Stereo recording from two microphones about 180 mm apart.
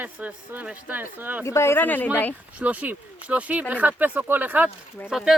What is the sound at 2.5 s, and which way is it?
Speech, 10° right (ahead or behind).